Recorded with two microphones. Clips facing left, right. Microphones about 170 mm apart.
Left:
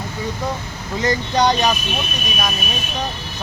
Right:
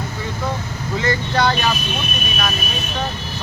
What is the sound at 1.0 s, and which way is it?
Speech, 15° left (ahead or behind).